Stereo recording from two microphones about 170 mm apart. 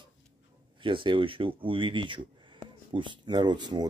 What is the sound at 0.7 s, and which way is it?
Speech, 30° right (ahead or behind).